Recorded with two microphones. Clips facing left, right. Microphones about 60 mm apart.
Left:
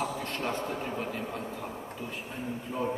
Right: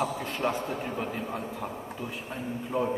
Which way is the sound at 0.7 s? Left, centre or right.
Right.